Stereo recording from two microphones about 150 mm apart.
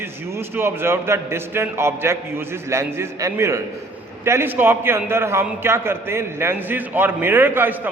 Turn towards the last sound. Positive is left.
turn(degrees=-15)  # may be behind; listen again after turning